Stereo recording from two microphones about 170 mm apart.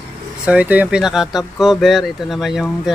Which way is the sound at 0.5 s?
10° right (ahead or behind).